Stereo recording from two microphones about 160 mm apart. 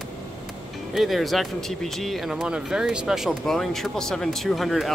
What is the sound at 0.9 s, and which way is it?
Speech, centre (ahead or behind).